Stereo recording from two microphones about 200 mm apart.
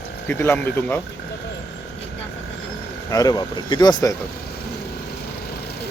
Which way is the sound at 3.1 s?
20° left (ahead or behind).